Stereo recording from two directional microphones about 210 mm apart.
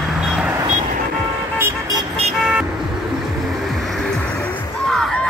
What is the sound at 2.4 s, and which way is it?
Vehicle, 5° right (ahead or behind).